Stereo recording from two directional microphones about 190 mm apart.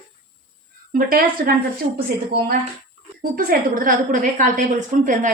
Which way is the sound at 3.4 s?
50° right (ahead or behind).